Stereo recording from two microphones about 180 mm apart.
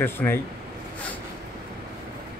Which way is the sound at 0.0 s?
10° left (ahead or behind).